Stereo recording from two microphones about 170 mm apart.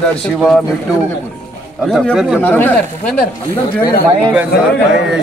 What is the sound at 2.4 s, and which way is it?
Speech, 10° left (ahead or behind).